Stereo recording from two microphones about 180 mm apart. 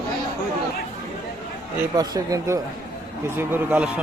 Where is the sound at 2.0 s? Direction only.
20° right (ahead or behind).